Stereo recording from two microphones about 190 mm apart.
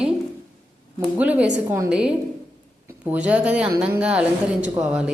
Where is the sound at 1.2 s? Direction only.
5° right (ahead or behind).